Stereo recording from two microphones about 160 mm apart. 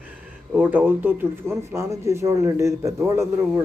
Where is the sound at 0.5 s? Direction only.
10° right (ahead or behind).